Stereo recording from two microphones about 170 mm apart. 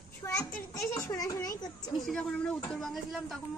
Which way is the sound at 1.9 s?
Centre (ahead or behind).